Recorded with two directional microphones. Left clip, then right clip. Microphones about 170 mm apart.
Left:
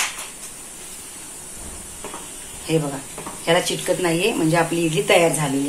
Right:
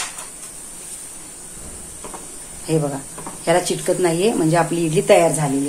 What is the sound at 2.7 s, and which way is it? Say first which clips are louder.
A woman's voice: right 1 dB; 75° right (ahead or behind).